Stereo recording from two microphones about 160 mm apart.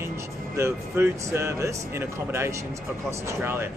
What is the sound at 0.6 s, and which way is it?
Speech, 15° right (ahead or behind).